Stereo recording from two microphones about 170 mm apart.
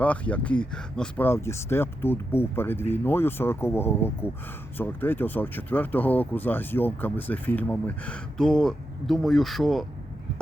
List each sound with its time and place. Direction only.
0.0 s speech: 10° left (ahead or behind)